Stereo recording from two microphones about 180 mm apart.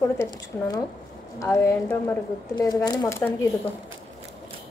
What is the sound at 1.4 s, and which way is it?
A woman's voice, 15° left (ahead or behind).